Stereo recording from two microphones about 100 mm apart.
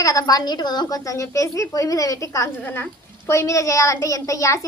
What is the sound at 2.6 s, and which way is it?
A woman's voice, 20° left (ahead or behind).